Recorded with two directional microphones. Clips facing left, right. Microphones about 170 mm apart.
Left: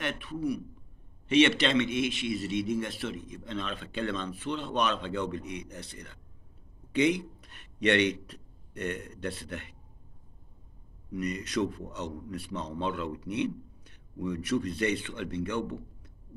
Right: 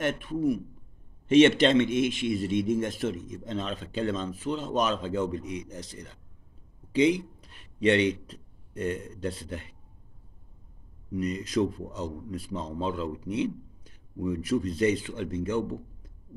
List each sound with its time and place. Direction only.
0.0 s a man's voice: 45° right (ahead or behind)
5.4 s a man's voice: 60° left (ahead or behind)
11.2 s speech: 65° left (ahead or behind)
12.4 s a man's voice: 35° right (ahead or behind)
13.1 s speech: 65° left (ahead or behind)